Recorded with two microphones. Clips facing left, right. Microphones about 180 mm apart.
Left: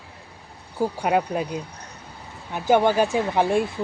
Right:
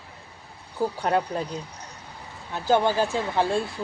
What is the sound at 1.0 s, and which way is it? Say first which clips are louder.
Speech: left 3 dB; 10° left (ahead or behind).